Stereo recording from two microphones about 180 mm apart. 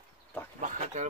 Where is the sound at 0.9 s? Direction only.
40° right (ahead or behind).